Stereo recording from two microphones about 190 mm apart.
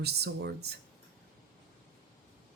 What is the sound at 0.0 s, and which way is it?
Speech, 60° right (ahead or behind).